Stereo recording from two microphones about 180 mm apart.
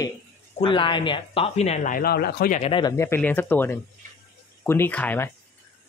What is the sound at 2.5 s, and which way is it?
Speech, 35° left (ahead or behind).